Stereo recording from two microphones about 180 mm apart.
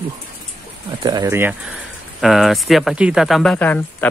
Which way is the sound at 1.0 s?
20° right (ahead or behind).